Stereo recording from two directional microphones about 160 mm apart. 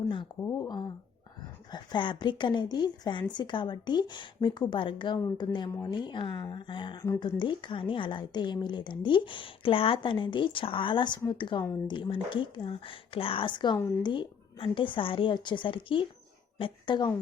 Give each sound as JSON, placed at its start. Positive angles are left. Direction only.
{"t": 0.4, "sound": "a woman's voice", "side_deg": 25}